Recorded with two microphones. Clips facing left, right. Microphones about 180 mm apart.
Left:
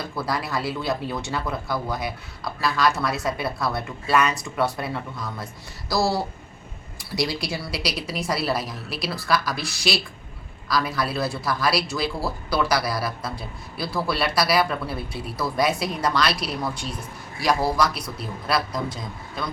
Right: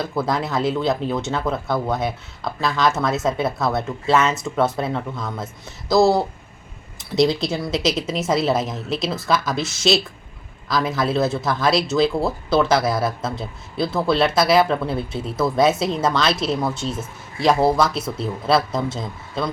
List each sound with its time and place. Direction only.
0.2 s speech: 20° right (ahead or behind)